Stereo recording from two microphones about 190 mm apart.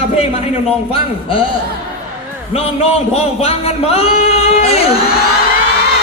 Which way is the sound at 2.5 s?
30° left (ahead or behind).